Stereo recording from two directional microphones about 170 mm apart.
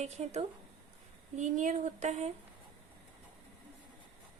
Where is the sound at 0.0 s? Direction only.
40° right (ahead or behind).